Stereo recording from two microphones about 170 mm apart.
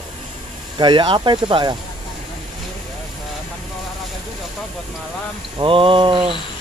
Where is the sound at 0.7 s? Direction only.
30° right (ahead or behind).